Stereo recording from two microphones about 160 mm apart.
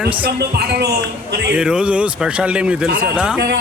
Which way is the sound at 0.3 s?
90° right.